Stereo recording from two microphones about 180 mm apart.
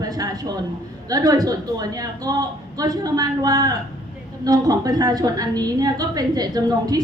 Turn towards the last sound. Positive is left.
turn(degrees=-20)  # may be behind; listen again after turning